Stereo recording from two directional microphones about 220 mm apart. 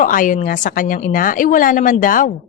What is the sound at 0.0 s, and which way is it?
A woman's voice, 35° left (ahead or behind).